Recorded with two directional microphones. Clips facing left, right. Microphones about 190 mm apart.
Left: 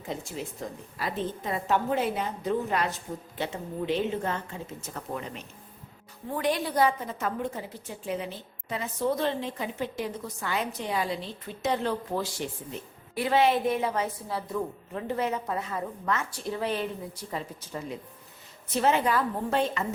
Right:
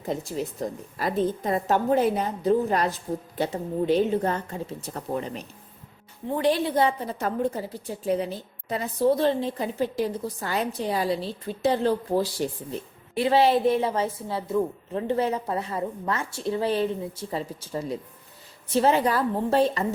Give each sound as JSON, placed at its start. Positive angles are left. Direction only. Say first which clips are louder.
{"t": 0.6, "sound": "a woman's voice", "louder": "right 6 dB", "side_deg": -40}